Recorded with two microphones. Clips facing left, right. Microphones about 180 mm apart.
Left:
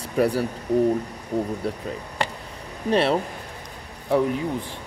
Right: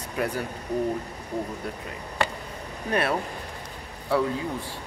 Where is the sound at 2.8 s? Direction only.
25° left (ahead or behind).